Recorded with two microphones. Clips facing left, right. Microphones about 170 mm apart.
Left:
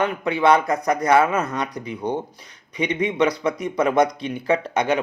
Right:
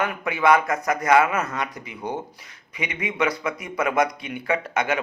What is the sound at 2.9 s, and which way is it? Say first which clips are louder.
A man's voice: left 5 dB; 35° left (ahead or behind).